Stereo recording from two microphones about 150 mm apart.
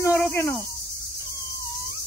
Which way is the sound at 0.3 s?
15° left (ahead or behind).